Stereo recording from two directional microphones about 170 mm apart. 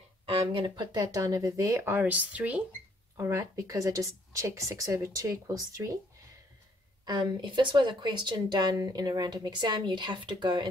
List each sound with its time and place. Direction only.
0.3 s speech: 30° right (ahead or behind)
7.1 s speech: 25° right (ahead or behind)